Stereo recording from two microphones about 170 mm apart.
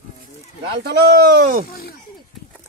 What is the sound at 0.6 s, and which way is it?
Speech, 75° right (ahead or behind).